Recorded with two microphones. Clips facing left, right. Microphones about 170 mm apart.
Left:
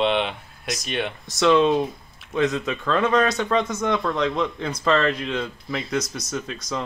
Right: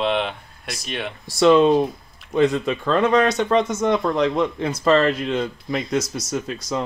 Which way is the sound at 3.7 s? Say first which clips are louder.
Right 4 dB; 25° right (ahead or behind).